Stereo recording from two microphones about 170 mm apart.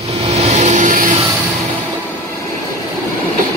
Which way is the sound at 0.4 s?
40° right (ahead or behind).